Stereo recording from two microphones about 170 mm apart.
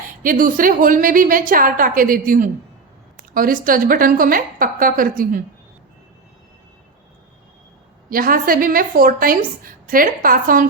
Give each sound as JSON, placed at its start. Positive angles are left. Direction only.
{"t": 0.2, "sound": "a woman's voice", "side_deg": -55}
{"t": 8.1, "sound": "a woman's voice", "side_deg": -55}